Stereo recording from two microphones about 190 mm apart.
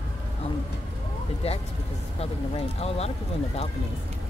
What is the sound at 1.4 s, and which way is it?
Speech, 30° left (ahead or behind).